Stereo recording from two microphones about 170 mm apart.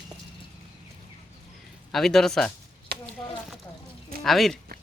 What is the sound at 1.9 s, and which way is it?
Speech, centre (ahead or behind).